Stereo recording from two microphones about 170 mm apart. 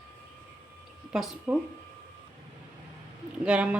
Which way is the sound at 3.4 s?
5° right (ahead or behind).